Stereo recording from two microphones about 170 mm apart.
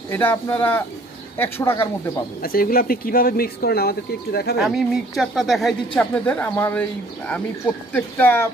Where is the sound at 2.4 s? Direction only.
60° left (ahead or behind).